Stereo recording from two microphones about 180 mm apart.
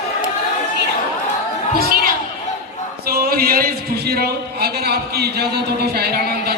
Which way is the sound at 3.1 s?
55° right (ahead or behind).